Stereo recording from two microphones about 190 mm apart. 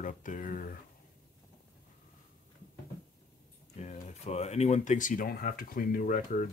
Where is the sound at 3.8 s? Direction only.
35° left (ahead or behind).